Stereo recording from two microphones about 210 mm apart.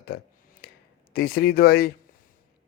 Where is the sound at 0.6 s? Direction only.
45° left (ahead or behind).